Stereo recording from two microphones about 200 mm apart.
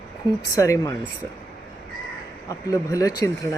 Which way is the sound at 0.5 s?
15° left (ahead or behind).